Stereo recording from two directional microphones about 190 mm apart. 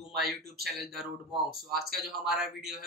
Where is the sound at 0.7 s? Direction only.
Centre (ahead or behind).